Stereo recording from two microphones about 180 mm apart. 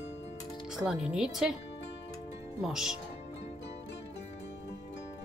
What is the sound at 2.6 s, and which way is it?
Speech, centre (ahead or behind).